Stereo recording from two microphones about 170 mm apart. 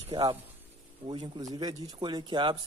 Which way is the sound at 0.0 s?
30° right (ahead or behind).